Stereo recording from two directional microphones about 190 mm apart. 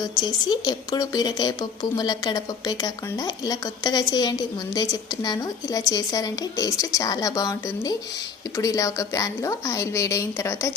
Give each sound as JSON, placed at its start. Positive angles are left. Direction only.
{"t": 0.2, "sound": "a woman's voice", "side_deg": 20}